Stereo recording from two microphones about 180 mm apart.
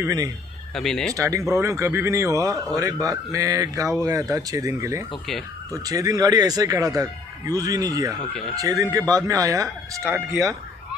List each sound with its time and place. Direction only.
0.0 s speech: 20° right (ahead or behind)
0.7 s speech: 5° left (ahead or behind)
1.1 s speech: 15° right (ahead or behind)